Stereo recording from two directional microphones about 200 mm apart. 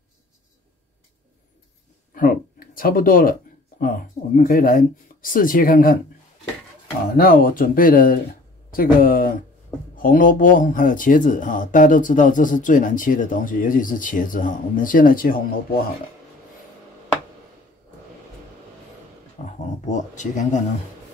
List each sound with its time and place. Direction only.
2.1 s speech: 45° left (ahead or behind)
4.4 s speech: 45° left (ahead or behind)
7.2 s speech: 45° left (ahead or behind)
19.4 s a sound: 40° left (ahead or behind)
19.8 s speech: 35° left (ahead or behind)